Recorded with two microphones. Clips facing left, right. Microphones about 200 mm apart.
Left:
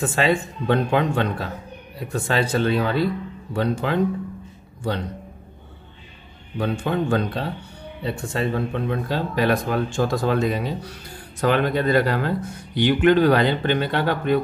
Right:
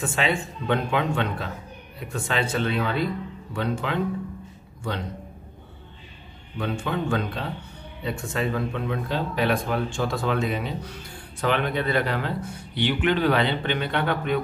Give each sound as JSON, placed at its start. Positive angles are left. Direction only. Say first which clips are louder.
{"t": 0.0, "sound": "speech", "louder": "left 5 dB", "side_deg": 40}
{"t": 6.6, "sound": "speech", "louder": "left 4 dB", "side_deg": 40}